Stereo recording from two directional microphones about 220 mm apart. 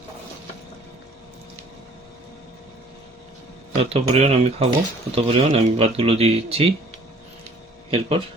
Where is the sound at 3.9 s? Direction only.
25° right (ahead or behind).